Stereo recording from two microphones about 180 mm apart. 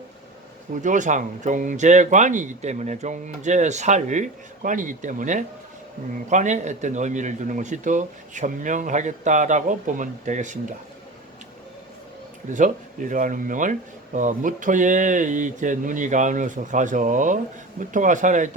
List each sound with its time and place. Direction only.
0.7 s speech: 45° right (ahead or behind)
12.5 s speech: 45° right (ahead or behind)